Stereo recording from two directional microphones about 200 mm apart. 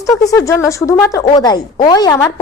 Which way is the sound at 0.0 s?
15° left (ahead or behind).